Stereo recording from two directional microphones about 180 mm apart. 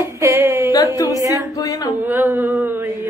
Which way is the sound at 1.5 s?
20° left (ahead or behind).